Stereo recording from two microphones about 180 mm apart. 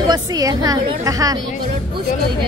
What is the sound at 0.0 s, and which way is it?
A woman's voice, 20° right (ahead or behind).